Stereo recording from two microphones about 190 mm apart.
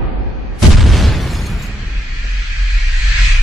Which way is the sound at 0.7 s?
Centre (ahead or behind).